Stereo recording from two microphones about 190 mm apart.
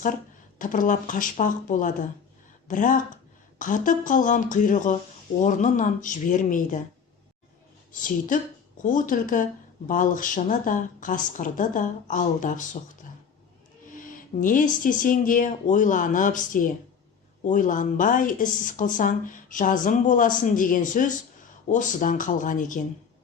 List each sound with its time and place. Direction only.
0.6 s speech: 45° left (ahead or behind)
8.3 s speech: 45° left (ahead or behind)
13.9 s speech: 45° left (ahead or behind)